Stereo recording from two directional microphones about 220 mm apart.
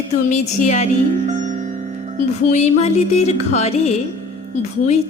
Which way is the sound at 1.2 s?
35° right (ahead or behind).